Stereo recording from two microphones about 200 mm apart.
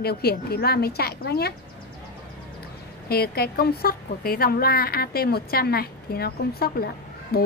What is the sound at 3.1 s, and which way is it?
A woman's voice, 50° left (ahead or behind).